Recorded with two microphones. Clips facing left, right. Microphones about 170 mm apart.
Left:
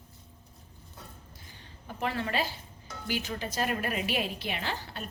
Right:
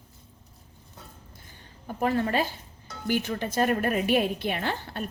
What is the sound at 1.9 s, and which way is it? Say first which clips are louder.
A woman's voice: right 6 dB; 45° right (ahead or behind).